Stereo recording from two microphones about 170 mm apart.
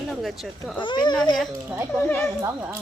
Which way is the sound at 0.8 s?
25° left (ahead or behind).